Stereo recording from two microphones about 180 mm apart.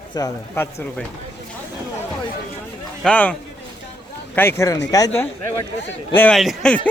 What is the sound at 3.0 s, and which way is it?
Speech, 5° left (ahead or behind).